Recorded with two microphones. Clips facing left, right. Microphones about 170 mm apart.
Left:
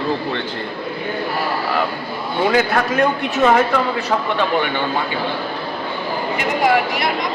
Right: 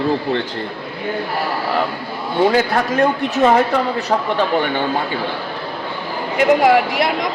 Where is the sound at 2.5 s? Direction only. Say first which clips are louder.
Left 2 dB; 30° right (ahead or behind).